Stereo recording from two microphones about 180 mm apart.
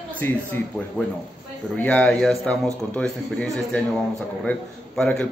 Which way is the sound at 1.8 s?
5° left (ahead or behind).